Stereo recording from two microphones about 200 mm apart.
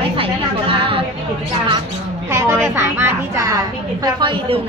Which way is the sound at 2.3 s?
10° right (ahead or behind).